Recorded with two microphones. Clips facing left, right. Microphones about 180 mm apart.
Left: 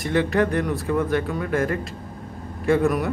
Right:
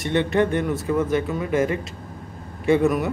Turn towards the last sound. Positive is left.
turn(degrees=0)  # may be behind; listen again after turning